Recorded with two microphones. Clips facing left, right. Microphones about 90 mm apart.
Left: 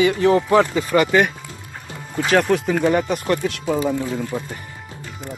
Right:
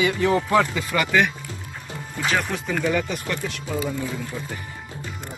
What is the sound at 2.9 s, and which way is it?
Speech, 45° left (ahead or behind).